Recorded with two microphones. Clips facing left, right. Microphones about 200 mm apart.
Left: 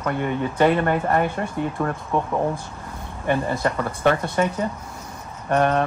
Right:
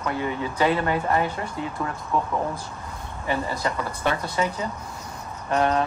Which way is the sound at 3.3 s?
55° left (ahead or behind).